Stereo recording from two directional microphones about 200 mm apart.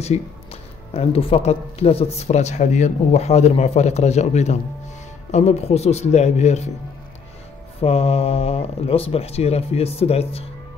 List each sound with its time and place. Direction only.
0.0 s speech: 30° left (ahead or behind)
7.8 s speech: 30° left (ahead or behind)